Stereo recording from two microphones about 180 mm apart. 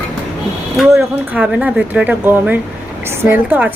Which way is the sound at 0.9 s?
10° right (ahead or behind).